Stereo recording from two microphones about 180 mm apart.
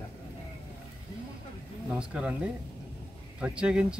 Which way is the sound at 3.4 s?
5° right (ahead or behind).